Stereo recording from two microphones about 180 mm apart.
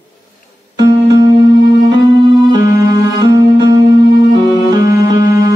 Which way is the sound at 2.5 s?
25° right (ahead or behind).